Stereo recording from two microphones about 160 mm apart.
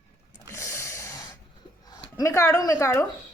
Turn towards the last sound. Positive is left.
turn(degrees=20)  # may be behind; listen again after turning